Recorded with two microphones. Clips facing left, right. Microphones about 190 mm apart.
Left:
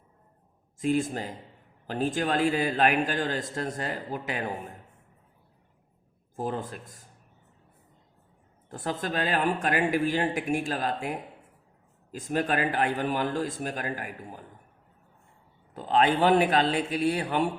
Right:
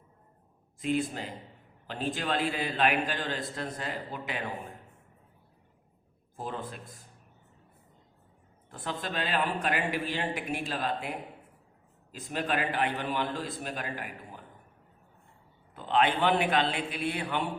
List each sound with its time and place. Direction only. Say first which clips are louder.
0.8 s a man's voice: left 4 dB; 45° left (ahead or behind)
6.3 s a man's voice: left 5 dB; 45° left (ahead or behind)
8.7 s a man's voice: left 4 dB; 45° left (ahead or behind)
12.1 s a man's voice: left 4 dB; 45° left (ahead or behind)
15.7 s a man's voice: left 3 dB; 40° left (ahead or behind)